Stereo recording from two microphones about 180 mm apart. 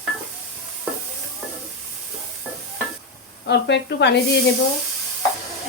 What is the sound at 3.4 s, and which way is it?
Speech, 70° left (ahead or behind).